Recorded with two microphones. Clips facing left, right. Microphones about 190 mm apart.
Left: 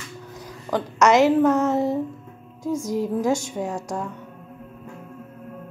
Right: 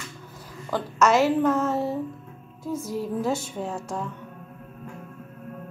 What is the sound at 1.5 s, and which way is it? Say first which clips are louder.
Speech: left 4 dB; 80° left.